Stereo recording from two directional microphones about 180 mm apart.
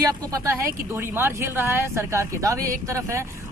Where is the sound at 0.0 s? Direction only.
20° right (ahead or behind).